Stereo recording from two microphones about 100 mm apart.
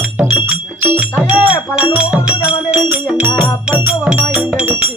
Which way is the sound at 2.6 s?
15° right (ahead or behind).